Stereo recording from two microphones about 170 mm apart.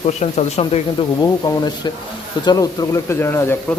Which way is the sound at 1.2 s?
25° left (ahead or behind).